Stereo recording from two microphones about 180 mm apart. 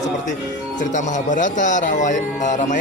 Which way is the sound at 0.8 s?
45° left (ahead or behind).